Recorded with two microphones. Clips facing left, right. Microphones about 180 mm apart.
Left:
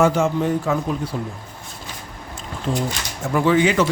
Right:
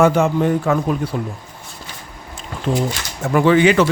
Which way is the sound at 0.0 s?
60° right (ahead or behind).